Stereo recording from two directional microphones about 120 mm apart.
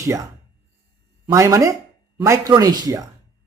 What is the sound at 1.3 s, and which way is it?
Speech, 30° right (ahead or behind).